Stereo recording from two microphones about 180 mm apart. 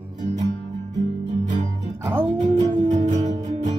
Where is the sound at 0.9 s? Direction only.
40° right (ahead or behind).